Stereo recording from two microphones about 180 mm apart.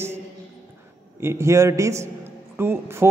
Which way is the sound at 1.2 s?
15° right (ahead or behind).